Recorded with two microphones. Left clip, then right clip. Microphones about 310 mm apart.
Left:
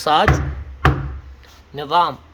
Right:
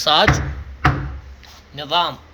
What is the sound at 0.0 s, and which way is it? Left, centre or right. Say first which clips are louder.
Speech: right 1 dB; centre.